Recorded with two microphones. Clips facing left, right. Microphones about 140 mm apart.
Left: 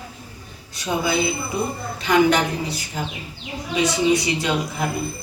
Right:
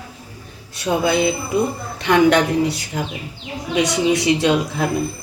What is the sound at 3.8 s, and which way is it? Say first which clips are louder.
Speech: right 1 dB; 90° right.